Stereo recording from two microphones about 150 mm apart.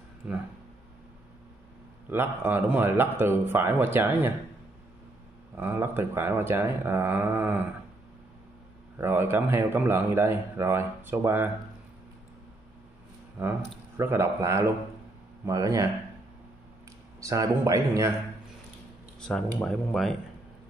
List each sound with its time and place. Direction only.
0.2 s a man's voice: 5° right (ahead or behind)
2.0 s a man's voice: 15° right (ahead or behind)
5.6 s a man's voice: 15° right (ahead or behind)
8.9 s a man's voice: 15° right (ahead or behind)
13.4 s a man's voice: 15° right (ahead or behind)
17.2 s speech: 20° right (ahead or behind)
19.1 s speech: 5° left (ahead or behind)